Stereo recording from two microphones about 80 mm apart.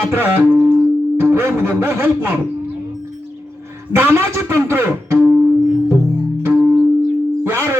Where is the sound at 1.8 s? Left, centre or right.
Right.